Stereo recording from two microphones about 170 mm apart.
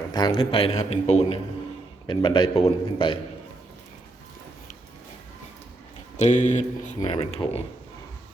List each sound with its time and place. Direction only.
0.1 s speech: 30° left (ahead or behind)
2.0 s a man's voice: 25° left (ahead or behind)
6.1 s speech: 45° left (ahead or behind)